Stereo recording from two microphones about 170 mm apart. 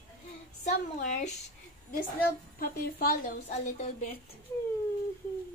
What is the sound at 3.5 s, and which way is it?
Speech, 45° left (ahead or behind).